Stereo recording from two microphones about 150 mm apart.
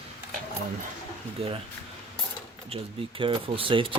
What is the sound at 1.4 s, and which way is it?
Speech, 40° right (ahead or behind).